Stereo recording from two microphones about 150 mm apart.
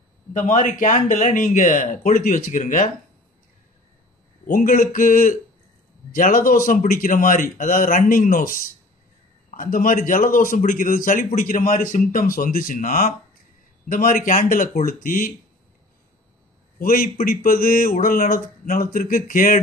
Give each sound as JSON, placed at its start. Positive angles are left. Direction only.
{"t": 0.3, "sound": "a man's voice", "side_deg": 55}
{"t": 4.5, "sound": "a man's voice", "side_deg": 60}
{"t": 16.7, "sound": "speech", "side_deg": 70}